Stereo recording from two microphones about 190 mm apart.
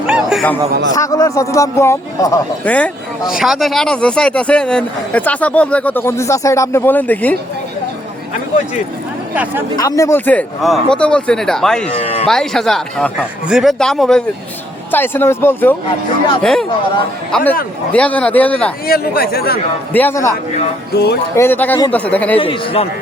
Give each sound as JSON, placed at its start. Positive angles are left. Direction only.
{"t": 0.1, "sound": "a sound", "side_deg": -5}
{"t": 0.9, "sound": "speech", "side_deg": 15}
{"t": 9.3, "sound": "speech", "side_deg": -10}
{"t": 9.7, "sound": "speech", "side_deg": 20}
{"t": 11.9, "sound": "speech", "side_deg": 30}
{"t": 12.3, "sound": "speech", "side_deg": 0}
{"t": 18.9, "sound": "speech", "side_deg": 50}
{"t": 19.9, "sound": "speech", "side_deg": 10}
{"t": 20.9, "sound": "music", "side_deg": 60}
{"t": 21.3, "sound": "speech", "side_deg": 10}
{"t": 22.4, "sound": "a man's voice", "side_deg": 30}